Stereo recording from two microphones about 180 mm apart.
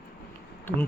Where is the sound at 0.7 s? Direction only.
10° left (ahead or behind).